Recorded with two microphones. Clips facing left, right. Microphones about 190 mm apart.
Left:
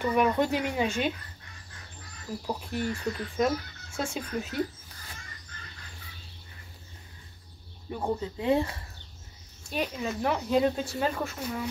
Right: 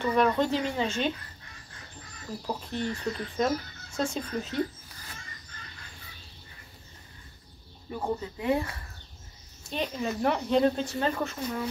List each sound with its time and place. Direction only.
0.0 s speech: 10° left (ahead or behind)
2.4 s speech: 10° left (ahead or behind)
7.9 s speech: 20° left (ahead or behind)
9.7 s speech: 5° left (ahead or behind)